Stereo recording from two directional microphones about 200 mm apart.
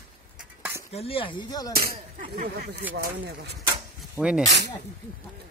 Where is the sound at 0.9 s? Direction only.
30° left (ahead or behind).